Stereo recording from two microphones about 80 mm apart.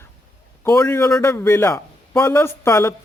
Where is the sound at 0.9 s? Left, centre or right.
Left.